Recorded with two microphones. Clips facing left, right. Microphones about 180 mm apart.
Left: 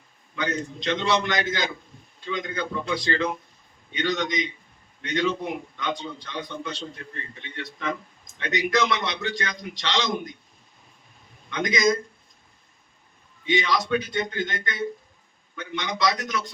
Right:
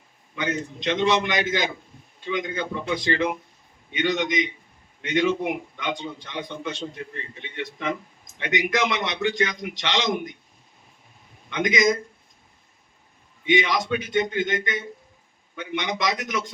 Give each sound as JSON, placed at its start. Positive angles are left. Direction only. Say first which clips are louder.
{"t": 0.3, "sound": "a man's voice", "louder": "right 1 dB", "side_deg": -20}
{"t": 11.5, "sound": "a man's voice", "louder": "right 3 dB", "side_deg": -20}
{"t": 13.4, "sound": "a man's voice", "louder": "right 2 dB", "side_deg": -20}